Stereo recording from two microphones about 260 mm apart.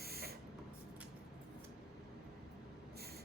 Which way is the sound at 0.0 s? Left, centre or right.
Right.